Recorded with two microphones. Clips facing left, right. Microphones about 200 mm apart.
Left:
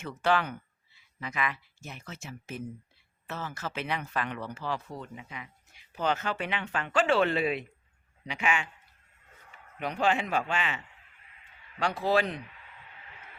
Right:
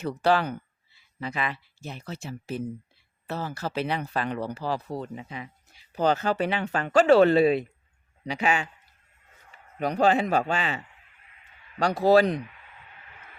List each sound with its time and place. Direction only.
0.0 s speech: 35° right (ahead or behind)
9.7 s speech: 40° right (ahead or behind)
11.8 s speech: 40° right (ahead or behind)